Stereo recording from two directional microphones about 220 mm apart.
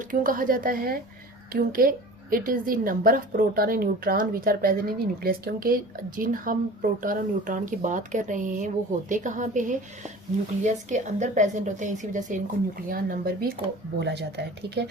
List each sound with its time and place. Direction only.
0.1 s a woman's voice: 40° right (ahead or behind)